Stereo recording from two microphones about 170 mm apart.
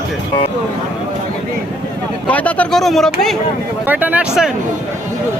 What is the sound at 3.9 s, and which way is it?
Speech, 10° right (ahead or behind).